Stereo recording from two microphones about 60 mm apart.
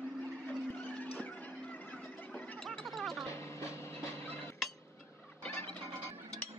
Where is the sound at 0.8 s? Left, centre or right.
Left.